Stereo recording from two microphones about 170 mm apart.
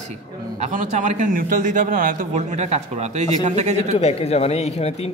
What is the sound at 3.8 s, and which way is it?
Speech, 35° left (ahead or behind).